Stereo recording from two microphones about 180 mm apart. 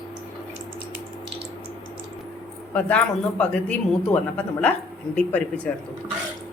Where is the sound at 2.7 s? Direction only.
5° left (ahead or behind).